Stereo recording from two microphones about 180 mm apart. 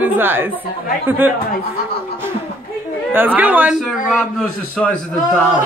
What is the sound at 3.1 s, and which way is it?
Speech, 10° right (ahead or behind).